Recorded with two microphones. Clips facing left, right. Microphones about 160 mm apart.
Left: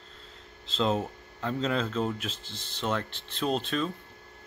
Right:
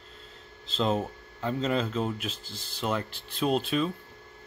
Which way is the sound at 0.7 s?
Centre (ahead or behind).